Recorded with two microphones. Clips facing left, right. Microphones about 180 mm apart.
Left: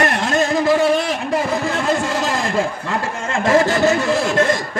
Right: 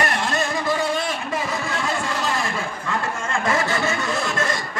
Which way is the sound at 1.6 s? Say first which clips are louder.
Left 6 dB; 40° left (ahead or behind).